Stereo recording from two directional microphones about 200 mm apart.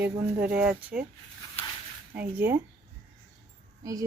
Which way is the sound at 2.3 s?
10° right (ahead or behind).